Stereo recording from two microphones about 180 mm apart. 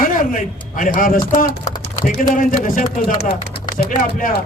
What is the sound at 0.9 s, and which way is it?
A man's voice, 50° left (ahead or behind).